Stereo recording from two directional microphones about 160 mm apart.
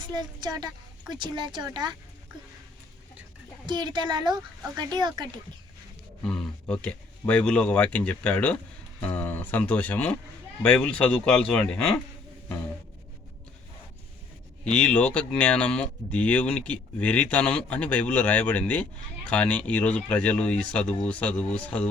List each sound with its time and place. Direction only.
0.0 s a woman's voice: 25° right (ahead or behind)
3.7 s a woman's voice: 25° right (ahead or behind)
6.2 s speech: 5° left (ahead or behind)
14.6 s speech: 5° left (ahead or behind)